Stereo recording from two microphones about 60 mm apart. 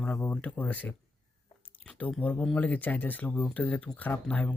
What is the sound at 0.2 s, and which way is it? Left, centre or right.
Speech, left.